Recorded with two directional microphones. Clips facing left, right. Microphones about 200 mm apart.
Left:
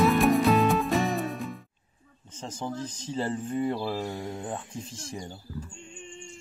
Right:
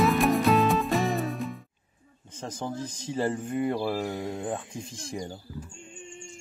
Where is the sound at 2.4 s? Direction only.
10° right (ahead or behind).